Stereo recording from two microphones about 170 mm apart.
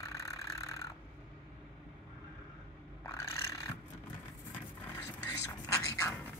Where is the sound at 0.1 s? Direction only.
20° left (ahead or behind).